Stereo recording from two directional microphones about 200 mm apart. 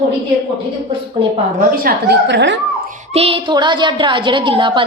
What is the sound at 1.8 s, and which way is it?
Speech, 55° right (ahead or behind).